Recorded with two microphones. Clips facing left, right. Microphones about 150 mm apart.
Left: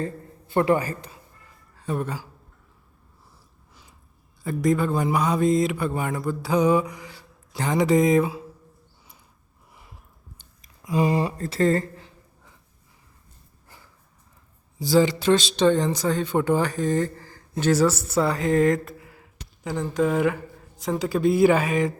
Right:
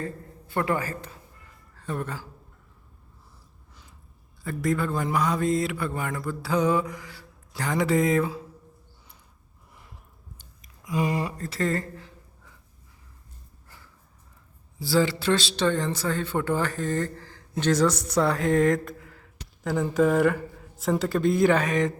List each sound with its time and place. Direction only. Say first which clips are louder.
0.0 s a man's voice: left 4 dB; 25° left (ahead or behind)
4.4 s speech: left 4 dB; 15° left (ahead or behind)
10.3 s speech: right 1 dB; 30° left (ahead or behind)
14.8 s speech: left 4 dB; 20° left (ahead or behind)
19.6 s speech: right 1 dB; 5° right (ahead or behind)